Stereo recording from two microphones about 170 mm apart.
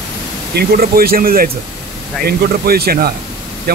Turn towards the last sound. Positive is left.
turn(degrees=-70)  # may be behind; listen again after turning